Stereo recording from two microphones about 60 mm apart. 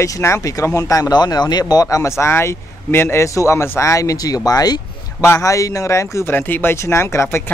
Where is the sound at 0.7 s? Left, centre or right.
Left.